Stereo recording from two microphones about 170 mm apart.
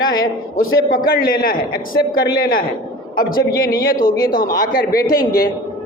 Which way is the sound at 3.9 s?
55° left (ahead or behind).